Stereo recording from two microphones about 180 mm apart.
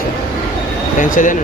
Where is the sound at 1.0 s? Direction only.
45° left (ahead or behind).